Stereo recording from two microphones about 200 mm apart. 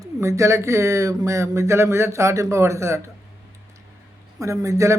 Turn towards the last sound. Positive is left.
turn(degrees=-15)  # may be behind; listen again after turning